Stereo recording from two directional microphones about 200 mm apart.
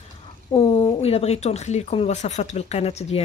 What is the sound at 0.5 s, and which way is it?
Speech, 30° left (ahead or behind).